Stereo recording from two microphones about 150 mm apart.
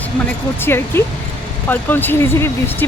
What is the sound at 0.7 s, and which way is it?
Speech, 15° left (ahead or behind).